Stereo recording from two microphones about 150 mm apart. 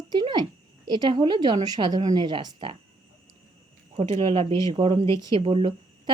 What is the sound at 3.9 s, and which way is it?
A woman's voice, 40° right (ahead or behind).